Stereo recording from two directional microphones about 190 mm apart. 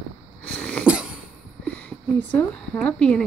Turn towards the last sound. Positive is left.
turn(degrees=5)  # may be behind; listen again after turning